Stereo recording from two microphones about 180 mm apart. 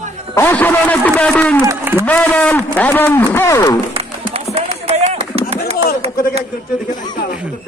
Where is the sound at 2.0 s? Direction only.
10° left (ahead or behind).